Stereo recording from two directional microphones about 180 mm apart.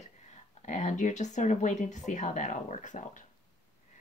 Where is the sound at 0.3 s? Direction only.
40° left (ahead or behind).